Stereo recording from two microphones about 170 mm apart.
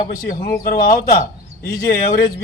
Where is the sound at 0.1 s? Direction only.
55° left (ahead or behind).